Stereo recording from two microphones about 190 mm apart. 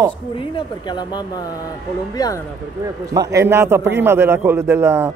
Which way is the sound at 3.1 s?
20° right (ahead or behind).